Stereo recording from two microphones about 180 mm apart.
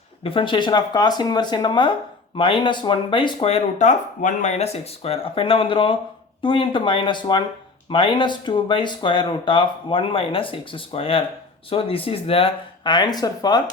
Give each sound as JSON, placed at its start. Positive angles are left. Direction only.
{"t": 0.2, "sound": "speech", "side_deg": 30}